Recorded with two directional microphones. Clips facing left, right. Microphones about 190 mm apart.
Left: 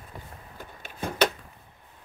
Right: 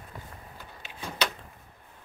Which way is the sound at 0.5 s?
50° left (ahead or behind).